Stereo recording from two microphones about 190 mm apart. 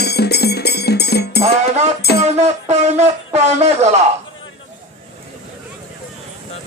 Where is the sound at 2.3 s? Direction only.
35° right (ahead or behind).